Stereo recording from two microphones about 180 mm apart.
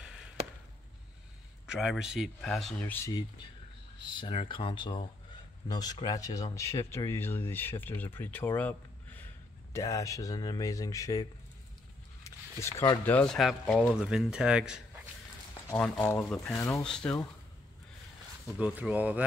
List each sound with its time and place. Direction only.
0.0 s chop: 5° right (ahead or behind)
1.7 s speech: 5° right (ahead or behind)
3.1 s speech: 25° left (ahead or behind)
12.2 s a sound: 15° left (ahead or behind)
13.0 s speech: 10° left (ahead or behind)
15.7 s speech: 5° left (ahead or behind)
18.6 s speech: 10° right (ahead or behind)